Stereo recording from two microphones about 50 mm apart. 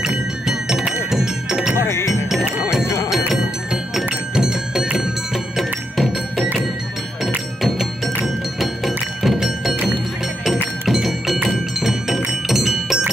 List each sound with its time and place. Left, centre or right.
0.0 s music: centre
1.8 s music: left
4.4 s music: centre
7.6 s music: centre
10.9 s music: centre